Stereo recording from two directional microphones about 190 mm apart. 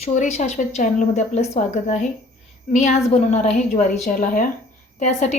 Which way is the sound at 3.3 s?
35° left (ahead or behind).